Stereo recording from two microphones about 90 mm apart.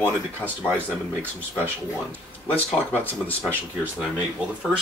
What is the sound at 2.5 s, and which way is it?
Speech, 20° left (ahead or behind).